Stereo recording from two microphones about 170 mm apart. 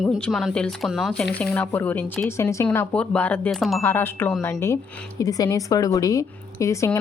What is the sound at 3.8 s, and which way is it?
A woman's voice, 15° left (ahead or behind).